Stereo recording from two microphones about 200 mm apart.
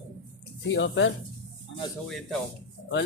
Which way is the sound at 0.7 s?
70° left (ahead or behind).